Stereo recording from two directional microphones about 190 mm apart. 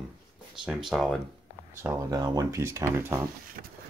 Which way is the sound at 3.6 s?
50° right (ahead or behind).